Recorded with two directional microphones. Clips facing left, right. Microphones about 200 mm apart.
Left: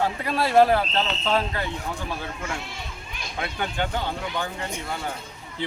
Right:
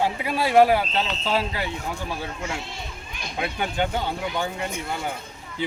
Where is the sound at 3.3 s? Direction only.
20° right (ahead or behind).